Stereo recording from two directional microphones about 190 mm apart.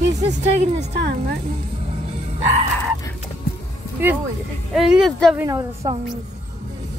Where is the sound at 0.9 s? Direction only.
60° right (ahead or behind).